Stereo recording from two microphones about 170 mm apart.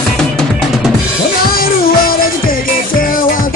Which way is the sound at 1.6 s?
55° left (ahead or behind).